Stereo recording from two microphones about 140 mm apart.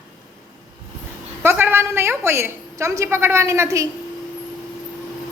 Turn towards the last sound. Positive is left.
turn(degrees=-20)  # may be behind; listen again after turning